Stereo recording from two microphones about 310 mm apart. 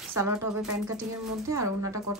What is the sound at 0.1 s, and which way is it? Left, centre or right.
A woman's voice, centre.